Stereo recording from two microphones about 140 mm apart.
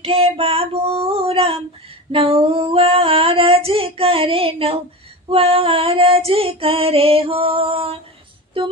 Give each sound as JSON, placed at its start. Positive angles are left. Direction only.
{"t": 0.0, "sound": "child singing", "side_deg": -40}
{"t": 2.1, "sound": "female singing", "side_deg": -45}